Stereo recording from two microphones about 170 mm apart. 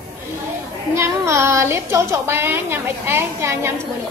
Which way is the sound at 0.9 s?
15° right (ahead or behind).